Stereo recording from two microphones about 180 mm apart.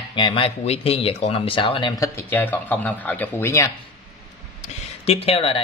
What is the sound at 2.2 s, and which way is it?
Speech, 10° left (ahead or behind).